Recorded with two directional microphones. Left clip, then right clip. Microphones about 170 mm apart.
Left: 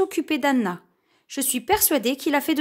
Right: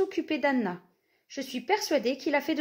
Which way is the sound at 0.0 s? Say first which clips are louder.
Left 5 dB; 40° left (ahead or behind).